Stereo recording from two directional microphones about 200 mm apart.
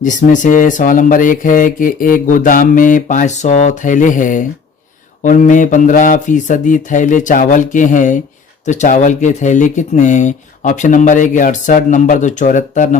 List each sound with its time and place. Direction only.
0.0 s speech: 40° left (ahead or behind)